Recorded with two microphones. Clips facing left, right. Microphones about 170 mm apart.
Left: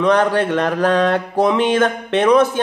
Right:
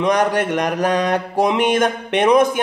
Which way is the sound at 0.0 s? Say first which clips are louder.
Left 2 dB; 15° right (ahead or behind).